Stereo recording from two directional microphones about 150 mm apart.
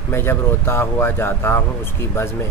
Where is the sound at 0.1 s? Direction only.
15° left (ahead or behind).